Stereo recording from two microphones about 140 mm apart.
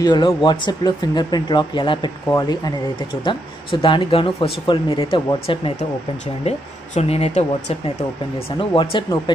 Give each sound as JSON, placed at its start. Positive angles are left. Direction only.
{"t": 0.0, "sound": "speech", "side_deg": 30}
{"t": 3.8, "sound": "speech", "side_deg": 35}
{"t": 7.0, "sound": "speech", "side_deg": 45}
{"t": 8.5, "sound": "speech", "side_deg": 35}